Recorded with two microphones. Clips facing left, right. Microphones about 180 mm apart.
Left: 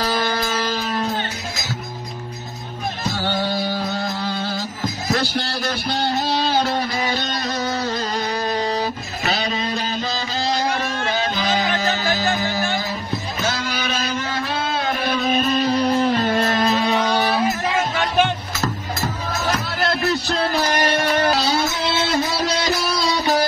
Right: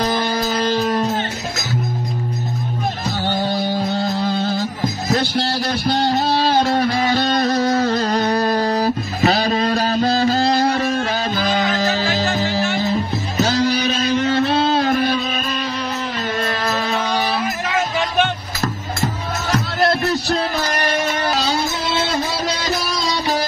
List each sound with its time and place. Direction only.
0.0 s music: 20° right (ahead or behind)
5.1 s speech: 30° right (ahead or behind)
7.4 s music: 35° right (ahead or behind)
8.0 s music: 55° right (ahead or behind)
8.5 s guitar: 55° right (ahead or behind)
8.7 s music: 40° right (ahead or behind)
9.7 s music: 60° right (ahead or behind)
10.0 s music: 35° right (ahead or behind)
10.4 s music: 60° right (ahead or behind)
11.3 s music: 35° right (ahead or behind)
15.6 s music: 35° left (ahead or behind)
16.3 s music: 25° left (ahead or behind)